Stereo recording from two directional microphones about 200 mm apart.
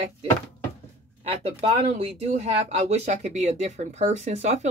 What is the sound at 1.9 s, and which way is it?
A woman's voice, 30° right (ahead or behind).